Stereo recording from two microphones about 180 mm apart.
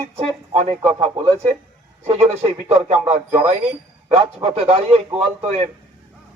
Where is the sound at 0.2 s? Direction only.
35° right (ahead or behind).